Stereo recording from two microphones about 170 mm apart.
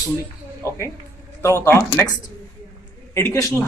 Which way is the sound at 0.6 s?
15° left (ahead or behind).